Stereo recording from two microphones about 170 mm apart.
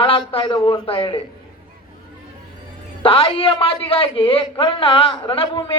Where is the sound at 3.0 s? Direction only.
30° left (ahead or behind).